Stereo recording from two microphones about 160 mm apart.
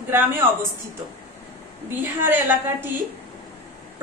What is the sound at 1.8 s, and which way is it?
A woman's voice, 15° right (ahead or behind).